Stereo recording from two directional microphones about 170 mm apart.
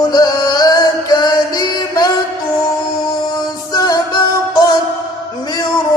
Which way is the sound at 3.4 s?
25° left (ahead or behind).